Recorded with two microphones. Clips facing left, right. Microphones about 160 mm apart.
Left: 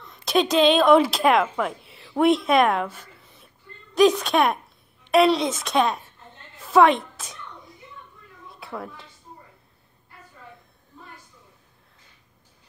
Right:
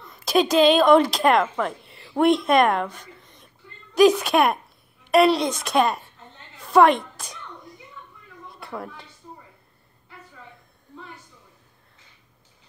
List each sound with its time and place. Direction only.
0.1 s a woman's voice: centre (ahead or behind)
6.6 s a sound: centre (ahead or behind)
8.5 s speech: centre (ahead or behind)